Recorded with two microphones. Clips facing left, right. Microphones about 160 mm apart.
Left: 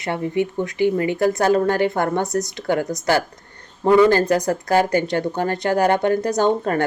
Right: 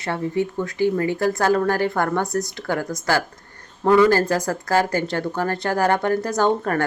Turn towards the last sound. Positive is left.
turn(degrees=20)  # may be behind; listen again after turning